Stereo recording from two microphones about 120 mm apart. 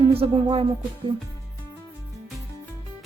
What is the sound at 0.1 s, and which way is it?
Speech, 50° right (ahead or behind).